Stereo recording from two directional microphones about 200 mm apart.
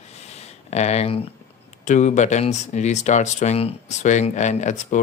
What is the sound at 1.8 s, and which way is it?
Speech, 35° left (ahead or behind).